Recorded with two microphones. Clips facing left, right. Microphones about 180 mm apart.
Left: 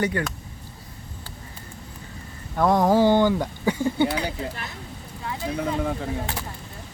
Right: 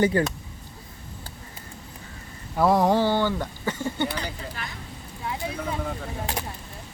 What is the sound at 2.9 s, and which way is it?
Speech, 15° left (ahead or behind).